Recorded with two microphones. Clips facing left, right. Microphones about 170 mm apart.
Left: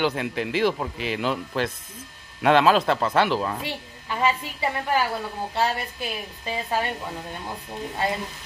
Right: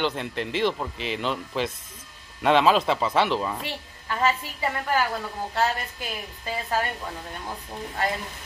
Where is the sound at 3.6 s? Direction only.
15° left (ahead or behind).